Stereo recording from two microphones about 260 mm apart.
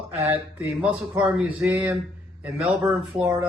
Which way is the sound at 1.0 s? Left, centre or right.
Centre.